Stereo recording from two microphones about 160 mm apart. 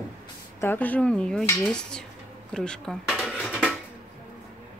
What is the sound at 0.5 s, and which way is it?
A woman's voice, 10° left (ahead or behind).